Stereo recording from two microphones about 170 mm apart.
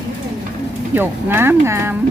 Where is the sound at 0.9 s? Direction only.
15° right (ahead or behind).